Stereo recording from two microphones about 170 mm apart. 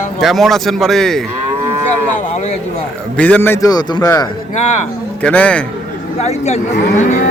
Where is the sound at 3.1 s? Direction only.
10° left (ahead or behind).